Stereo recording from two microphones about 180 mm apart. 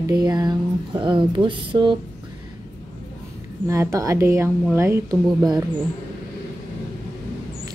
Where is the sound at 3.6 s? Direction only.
15° right (ahead or behind).